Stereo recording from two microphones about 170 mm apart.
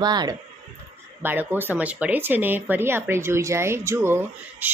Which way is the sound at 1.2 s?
10° right (ahead or behind).